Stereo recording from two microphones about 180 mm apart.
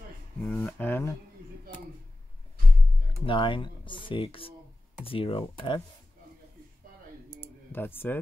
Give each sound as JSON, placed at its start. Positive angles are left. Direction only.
{"t": 0.5, "sound": "speech", "side_deg": 5}
{"t": 3.1, "sound": "speech", "side_deg": 30}
{"t": 7.7, "sound": "speech", "side_deg": 10}